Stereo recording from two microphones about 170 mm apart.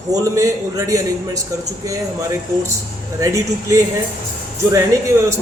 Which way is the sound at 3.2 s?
20° right (ahead or behind).